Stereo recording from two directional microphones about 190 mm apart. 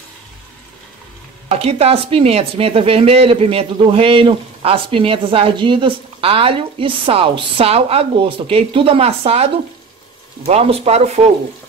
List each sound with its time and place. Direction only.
1.5 s speech: 30° right (ahead or behind)